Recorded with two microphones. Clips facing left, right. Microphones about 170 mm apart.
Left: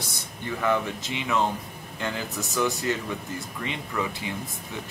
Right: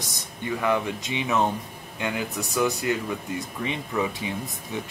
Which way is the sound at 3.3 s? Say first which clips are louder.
Right 3 dB; 15° right (ahead or behind).